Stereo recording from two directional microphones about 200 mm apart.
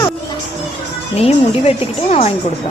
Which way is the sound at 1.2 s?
30° left (ahead or behind).